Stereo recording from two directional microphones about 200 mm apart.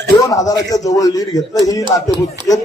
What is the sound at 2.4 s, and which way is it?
Speech, 20° right (ahead or behind).